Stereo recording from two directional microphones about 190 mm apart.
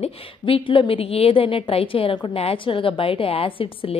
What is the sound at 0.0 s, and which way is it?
A woman's voice, 30° left (ahead or behind).